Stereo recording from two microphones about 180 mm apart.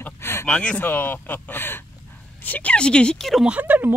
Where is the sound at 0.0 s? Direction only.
15° left (ahead or behind).